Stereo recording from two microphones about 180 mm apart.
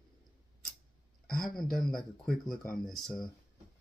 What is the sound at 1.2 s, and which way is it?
Speech, centre (ahead or behind).